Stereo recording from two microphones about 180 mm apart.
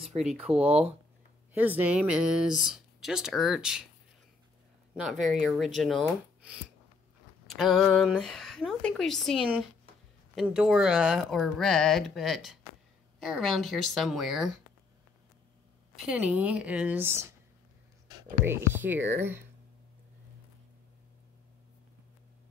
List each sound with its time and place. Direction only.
0.5 s speech: 5° right (ahead or behind)
5.0 s speech: centre (ahead or behind)
16.1 s speech: 5° right (ahead or behind)
18.4 s speech: 10° right (ahead or behind)